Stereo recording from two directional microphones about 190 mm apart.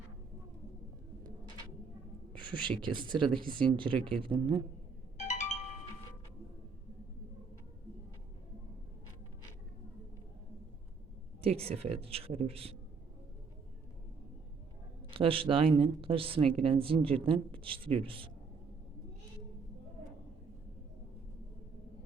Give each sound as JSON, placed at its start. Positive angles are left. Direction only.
{"t": 2.4, "sound": "speech", "side_deg": -25}
{"t": 5.1, "sound": "music", "side_deg": 35}
{"t": 11.3, "sound": "speech", "side_deg": -30}
{"t": 15.1, "sound": "speech", "side_deg": -30}